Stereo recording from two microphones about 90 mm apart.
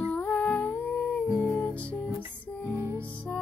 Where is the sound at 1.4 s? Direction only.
15° left (ahead or behind).